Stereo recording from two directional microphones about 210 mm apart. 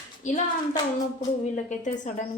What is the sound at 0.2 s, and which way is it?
Speech, 35° left (ahead or behind).